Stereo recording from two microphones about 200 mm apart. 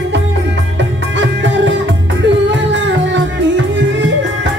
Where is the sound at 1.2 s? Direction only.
60° right (ahead or behind).